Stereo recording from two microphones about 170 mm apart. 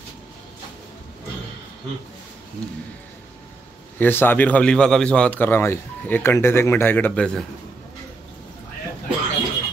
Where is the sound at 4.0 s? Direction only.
10° left (ahead or behind).